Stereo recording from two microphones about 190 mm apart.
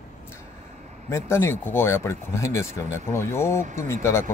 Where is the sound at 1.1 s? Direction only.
15° left (ahead or behind).